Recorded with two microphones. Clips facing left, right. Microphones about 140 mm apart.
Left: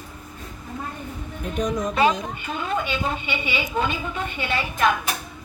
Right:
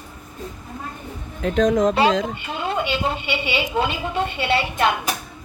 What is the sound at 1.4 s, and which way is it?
Speech, 90° right.